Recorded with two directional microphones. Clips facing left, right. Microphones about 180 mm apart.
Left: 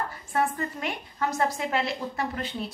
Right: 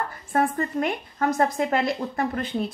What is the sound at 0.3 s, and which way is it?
A woman's voice, 50° right (ahead or behind).